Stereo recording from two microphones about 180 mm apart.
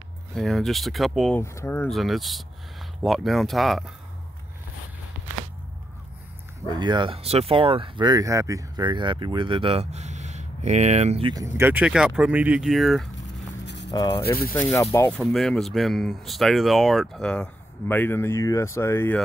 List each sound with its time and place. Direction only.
0.3 s speech: centre (ahead or behind)
1.4 s speech: 15° left (ahead or behind)
1.9 s speech: centre (ahead or behind)
6.8 s speech: 25° right (ahead or behind)
11.3 s speech: 15° right (ahead or behind); by 13.1 s centre (ahead or behind)
13.7 s a sound: 75° left (ahead or behind)
13.9 s speech: 20° left (ahead or behind)
15.1 s speech: centre (ahead or behind)